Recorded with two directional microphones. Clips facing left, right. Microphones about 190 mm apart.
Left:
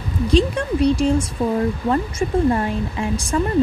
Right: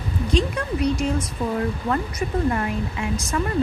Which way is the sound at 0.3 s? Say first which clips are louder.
Left 5 dB; 30° left (ahead or behind).